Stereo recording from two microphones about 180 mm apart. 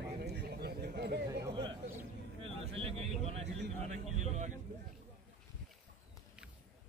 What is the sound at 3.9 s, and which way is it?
Speech, 40° right (ahead or behind).